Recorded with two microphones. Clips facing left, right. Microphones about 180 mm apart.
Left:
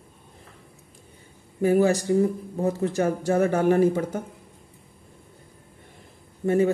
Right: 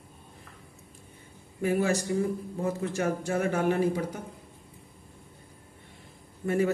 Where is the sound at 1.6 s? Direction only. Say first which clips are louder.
Left 6 dB; 35° left (ahead or behind).